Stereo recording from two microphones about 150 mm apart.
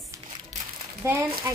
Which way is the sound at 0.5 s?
55° right (ahead or behind).